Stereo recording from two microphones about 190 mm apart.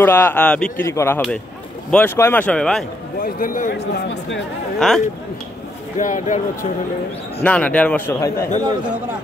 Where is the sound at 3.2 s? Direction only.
45° left (ahead or behind).